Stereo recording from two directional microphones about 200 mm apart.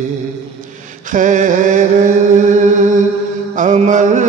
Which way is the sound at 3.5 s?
40° right (ahead or behind).